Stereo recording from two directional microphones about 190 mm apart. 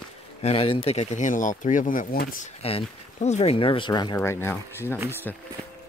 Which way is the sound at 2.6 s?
30° left (ahead or behind).